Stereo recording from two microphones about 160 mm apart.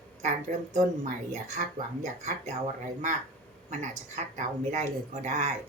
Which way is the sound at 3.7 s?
50° right (ahead or behind).